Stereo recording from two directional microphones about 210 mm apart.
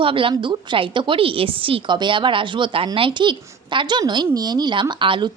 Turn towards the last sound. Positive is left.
turn(degrees=-20)  # may be behind; listen again after turning